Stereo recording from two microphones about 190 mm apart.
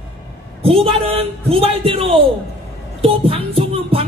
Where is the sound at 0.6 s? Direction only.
30° right (ahead or behind).